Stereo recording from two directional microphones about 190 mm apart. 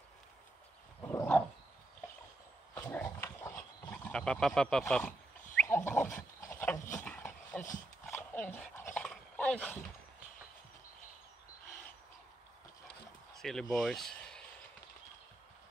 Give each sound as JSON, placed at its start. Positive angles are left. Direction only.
{"t": 1.0, "sound": "a sound", "side_deg": 10}
{"t": 2.7, "sound": "dog", "side_deg": 10}
{"t": 3.9, "sound": "speech", "side_deg": 5}
{"t": 5.9, "sound": "a sound", "side_deg": 10}
{"t": 8.1, "sound": "dog", "side_deg": 10}
{"t": 13.4, "sound": "speech", "side_deg": 0}